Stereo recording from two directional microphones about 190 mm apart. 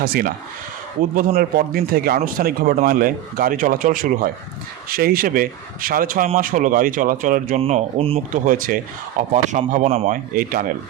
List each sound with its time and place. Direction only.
0.0 s speech: 50° right (ahead or behind)
7.6 s speech: 30° right (ahead or behind)
8.4 s speech: 45° right (ahead or behind)